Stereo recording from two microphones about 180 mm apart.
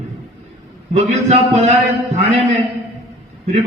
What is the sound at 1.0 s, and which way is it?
A man's voice, 40° right (ahead or behind).